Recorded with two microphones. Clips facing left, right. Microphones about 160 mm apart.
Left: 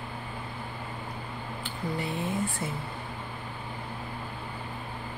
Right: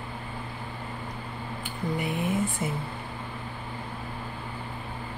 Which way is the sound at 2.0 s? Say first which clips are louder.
Right 3 dB; 20° right (ahead or behind).